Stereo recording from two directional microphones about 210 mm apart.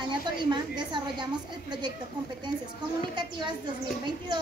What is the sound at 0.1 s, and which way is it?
Speech, 20° right (ahead or behind).